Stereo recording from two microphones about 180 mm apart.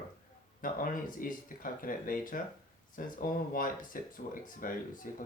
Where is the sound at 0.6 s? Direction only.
50° left (ahead or behind).